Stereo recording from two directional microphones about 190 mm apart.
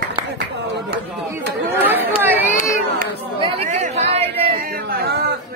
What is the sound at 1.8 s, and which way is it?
Chatter, 10° right (ahead or behind).